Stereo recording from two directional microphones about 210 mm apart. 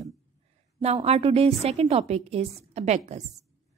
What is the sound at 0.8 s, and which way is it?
A woman's voice, 30° right (ahead or behind).